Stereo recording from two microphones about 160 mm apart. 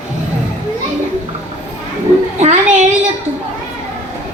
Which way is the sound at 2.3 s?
50° right (ahead or behind).